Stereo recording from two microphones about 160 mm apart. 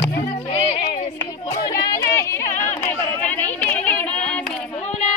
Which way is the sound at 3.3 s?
10° left (ahead or behind).